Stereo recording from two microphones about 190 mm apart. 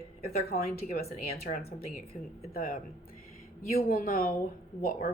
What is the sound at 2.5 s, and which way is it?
A woman's voice, 50° left (ahead or behind).